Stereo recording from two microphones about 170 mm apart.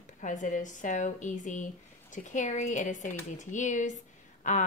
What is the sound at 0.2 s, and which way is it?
A woman's voice, 50° left (ahead or behind).